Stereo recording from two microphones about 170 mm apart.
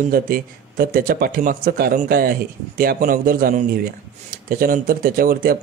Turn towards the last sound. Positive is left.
turn(degrees=-60)  # may be behind; listen again after turning